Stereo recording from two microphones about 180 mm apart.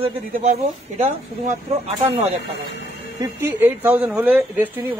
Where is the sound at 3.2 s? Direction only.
10° right (ahead or behind).